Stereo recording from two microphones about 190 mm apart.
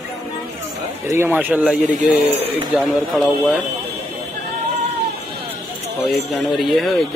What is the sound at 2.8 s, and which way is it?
Speech, centre (ahead or behind).